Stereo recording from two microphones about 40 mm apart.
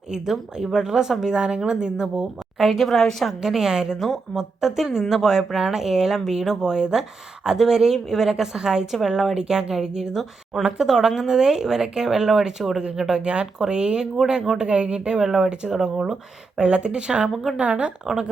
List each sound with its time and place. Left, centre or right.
0.1 s speech: centre
2.6 s speech: centre
3.4 s speech: centre
3.9 s speech: centre; by 17.9 s right
18.0 s speech: centre